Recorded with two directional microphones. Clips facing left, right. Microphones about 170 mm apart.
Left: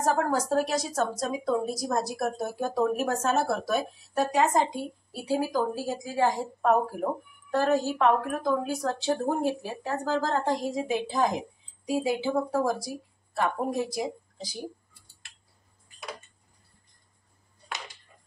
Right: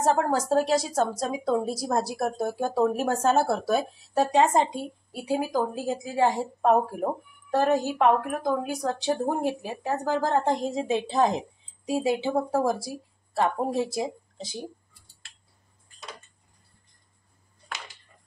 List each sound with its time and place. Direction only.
0.0 s a woman's voice: 25° right (ahead or behind)